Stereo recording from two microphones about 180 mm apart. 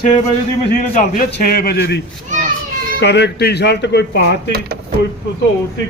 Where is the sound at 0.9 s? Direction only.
50° left (ahead or behind).